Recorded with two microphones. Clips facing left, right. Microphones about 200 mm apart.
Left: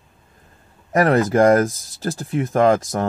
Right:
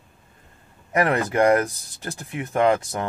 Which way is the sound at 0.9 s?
35° left (ahead or behind).